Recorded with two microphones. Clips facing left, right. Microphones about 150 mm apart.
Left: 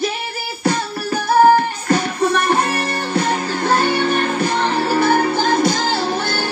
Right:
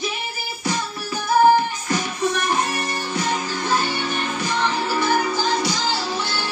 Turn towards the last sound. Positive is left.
turn(degrees=55)  # may be behind; listen again after turning